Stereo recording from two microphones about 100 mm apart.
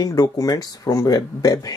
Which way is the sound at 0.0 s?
40° left (ahead or behind).